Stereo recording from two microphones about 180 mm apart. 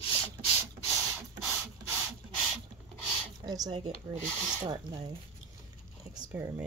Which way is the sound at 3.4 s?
20° right (ahead or behind).